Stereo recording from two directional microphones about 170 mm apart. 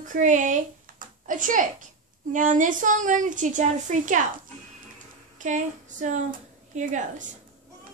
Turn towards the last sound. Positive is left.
turn(degrees=-45)  # may be behind; listen again after turning